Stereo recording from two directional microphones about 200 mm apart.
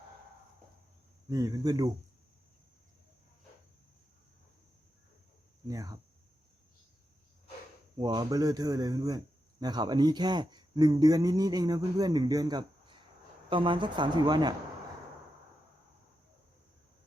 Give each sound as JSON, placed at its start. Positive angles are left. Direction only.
{"t": 1.3, "sound": "a man's voice", "side_deg": -15}
{"t": 5.6, "sound": "speech", "side_deg": -15}
{"t": 7.9, "sound": "a man's voice", "side_deg": -20}